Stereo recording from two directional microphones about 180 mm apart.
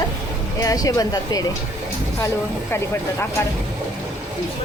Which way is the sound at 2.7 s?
15° left (ahead or behind).